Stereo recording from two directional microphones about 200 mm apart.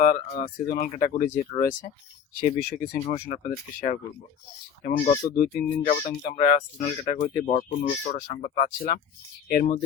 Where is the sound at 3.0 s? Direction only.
35° left (ahead or behind).